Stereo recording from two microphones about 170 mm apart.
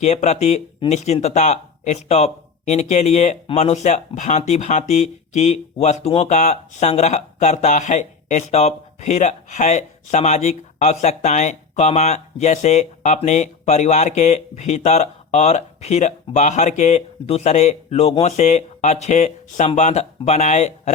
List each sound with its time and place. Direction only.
0.0 s speech: 40° left (ahead or behind)